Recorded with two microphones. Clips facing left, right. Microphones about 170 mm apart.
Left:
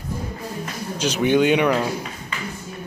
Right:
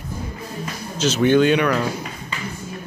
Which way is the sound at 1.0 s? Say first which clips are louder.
Right 2 dB; 15° left (ahead or behind).